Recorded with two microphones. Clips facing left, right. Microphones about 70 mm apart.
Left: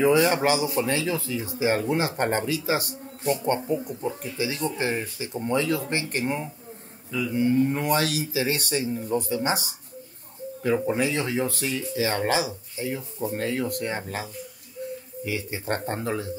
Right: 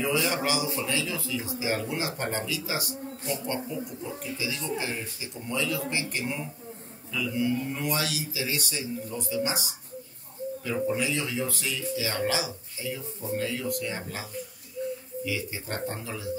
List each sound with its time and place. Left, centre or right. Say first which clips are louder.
0.0 s speech: left 7 dB; left
15.2 s speech: left 5 dB; left